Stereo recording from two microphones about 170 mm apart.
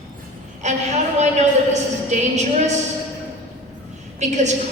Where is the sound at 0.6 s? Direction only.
40° right (ahead or behind).